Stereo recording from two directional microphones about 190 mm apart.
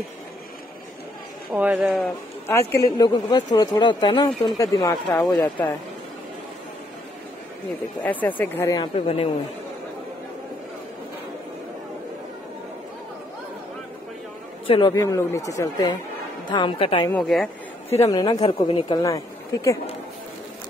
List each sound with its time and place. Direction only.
1.5 s speech: 10° right (ahead or behind)
2.0 s a man's voice: 15° left (ahead or behind)
8.0 s speech: 10° left (ahead or behind); by 9.3 s 30° left (ahead or behind)
14.7 s speech: 25° left (ahead or behind)
17.1 s speech: centre (ahead or behind)
17.8 s speech: 15° left (ahead or behind)